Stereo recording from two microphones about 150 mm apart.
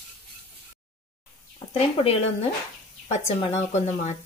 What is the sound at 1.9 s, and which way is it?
Speech, 40° left (ahead or behind).